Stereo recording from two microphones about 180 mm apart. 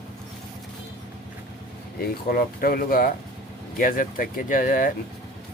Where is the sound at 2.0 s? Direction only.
55° left (ahead or behind).